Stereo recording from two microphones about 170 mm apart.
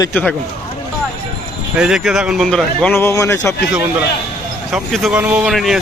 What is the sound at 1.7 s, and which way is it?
Speech, 5° right (ahead or behind).